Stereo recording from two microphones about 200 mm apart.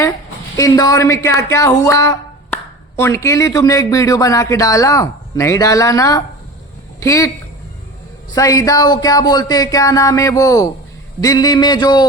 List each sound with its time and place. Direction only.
0.5 s a woman's voice: 20° left (ahead or behind)
8.4 s a woman's voice: 15° left (ahead or behind)